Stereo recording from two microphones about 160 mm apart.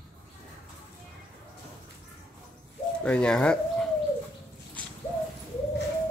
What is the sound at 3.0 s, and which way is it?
Speech, 5° left (ahead or behind).